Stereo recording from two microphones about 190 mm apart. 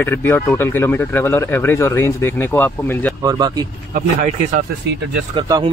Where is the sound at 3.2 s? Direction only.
20° right (ahead or behind).